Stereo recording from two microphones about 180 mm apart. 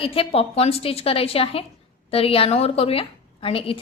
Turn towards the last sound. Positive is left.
turn(degrees=30)  # may be behind; listen again after turning